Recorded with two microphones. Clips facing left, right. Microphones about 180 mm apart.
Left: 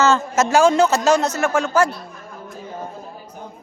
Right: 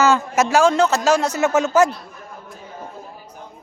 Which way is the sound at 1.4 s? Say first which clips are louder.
Right 2 dB; 20° right (ahead or behind).